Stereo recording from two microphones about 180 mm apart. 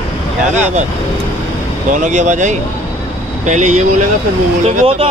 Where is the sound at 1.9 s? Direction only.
40° right (ahead or behind).